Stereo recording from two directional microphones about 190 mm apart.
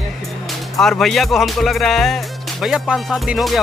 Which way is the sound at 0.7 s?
Centre (ahead or behind).